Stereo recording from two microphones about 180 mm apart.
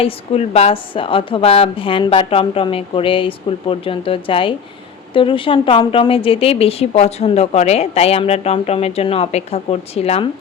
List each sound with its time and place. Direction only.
0.0 s a woman's voice: 35° left (ahead or behind)